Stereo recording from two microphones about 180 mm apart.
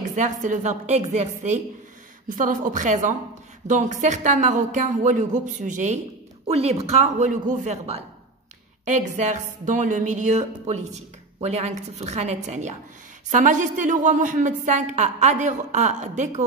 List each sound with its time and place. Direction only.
0.1 s a woman's voice: 45° right (ahead or behind)